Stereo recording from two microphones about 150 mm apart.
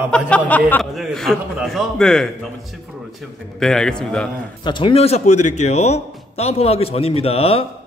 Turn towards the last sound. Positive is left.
turn(degrees=40)  # may be behind; listen again after turning